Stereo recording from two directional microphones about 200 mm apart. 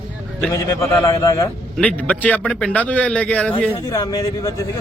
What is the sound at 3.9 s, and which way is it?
Speech, 15° left (ahead or behind).